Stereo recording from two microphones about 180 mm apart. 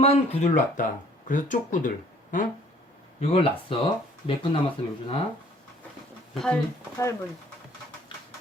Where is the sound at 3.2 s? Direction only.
30° left (ahead or behind).